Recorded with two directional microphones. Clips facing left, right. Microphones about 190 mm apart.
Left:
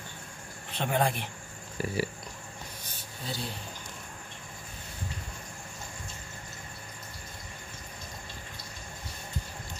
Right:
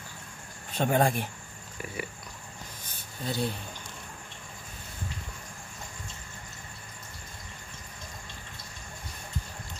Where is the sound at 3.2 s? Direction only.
55° right (ahead or behind).